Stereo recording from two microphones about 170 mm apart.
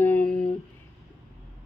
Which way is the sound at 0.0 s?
10° left (ahead or behind).